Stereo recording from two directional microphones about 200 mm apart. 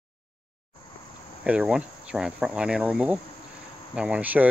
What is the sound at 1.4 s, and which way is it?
Speech, 5° right (ahead or behind).